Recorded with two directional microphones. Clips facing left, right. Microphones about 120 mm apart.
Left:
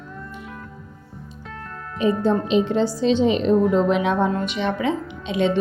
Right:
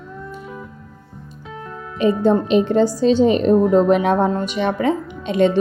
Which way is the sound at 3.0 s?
40° right (ahead or behind).